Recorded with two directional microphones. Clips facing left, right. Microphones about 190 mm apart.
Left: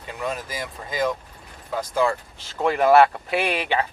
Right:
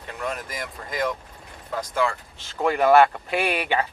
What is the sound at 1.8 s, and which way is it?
Speech, 35° left (ahead or behind).